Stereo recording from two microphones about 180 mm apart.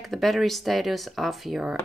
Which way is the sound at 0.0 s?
Centre (ahead or behind).